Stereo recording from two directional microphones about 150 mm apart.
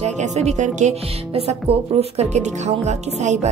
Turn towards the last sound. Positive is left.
turn(degrees=-50)  # may be behind; listen again after turning